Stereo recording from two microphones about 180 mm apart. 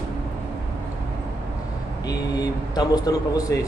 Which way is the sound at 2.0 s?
20° left (ahead or behind).